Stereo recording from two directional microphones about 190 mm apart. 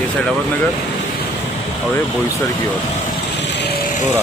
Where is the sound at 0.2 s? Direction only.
5° left (ahead or behind).